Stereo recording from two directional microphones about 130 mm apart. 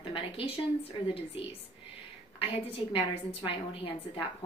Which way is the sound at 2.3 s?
45° left (ahead or behind).